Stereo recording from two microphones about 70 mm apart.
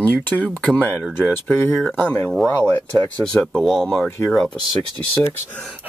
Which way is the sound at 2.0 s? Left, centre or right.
Left.